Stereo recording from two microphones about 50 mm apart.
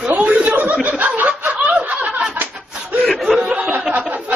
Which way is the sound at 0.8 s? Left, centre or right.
Right.